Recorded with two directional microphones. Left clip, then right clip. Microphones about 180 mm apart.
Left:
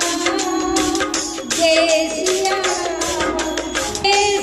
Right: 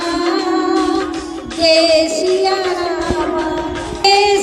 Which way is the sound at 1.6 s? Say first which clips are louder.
Right 4 dB; 30° right (ahead or behind).